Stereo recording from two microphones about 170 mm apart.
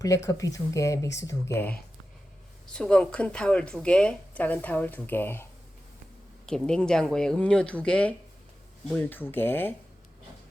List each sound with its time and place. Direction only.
0.0 s speech: 20° left (ahead or behind)
2.6 s speech: 5° left (ahead or behind)